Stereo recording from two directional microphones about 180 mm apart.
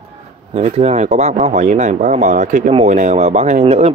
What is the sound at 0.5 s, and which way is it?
Speech, 40° right (ahead or behind).